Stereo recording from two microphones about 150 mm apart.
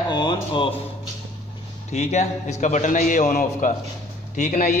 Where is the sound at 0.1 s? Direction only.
30° left (ahead or behind).